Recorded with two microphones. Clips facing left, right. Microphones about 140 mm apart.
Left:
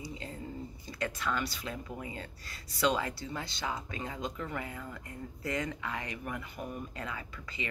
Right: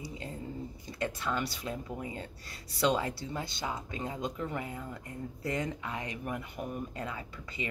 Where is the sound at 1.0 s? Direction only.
20° right (ahead or behind).